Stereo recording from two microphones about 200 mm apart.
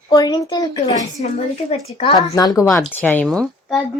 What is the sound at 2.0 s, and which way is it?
Speech, 30° left (ahead or behind).